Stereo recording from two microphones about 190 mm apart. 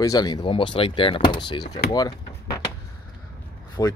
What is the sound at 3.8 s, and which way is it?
Speech, 20° left (ahead or behind).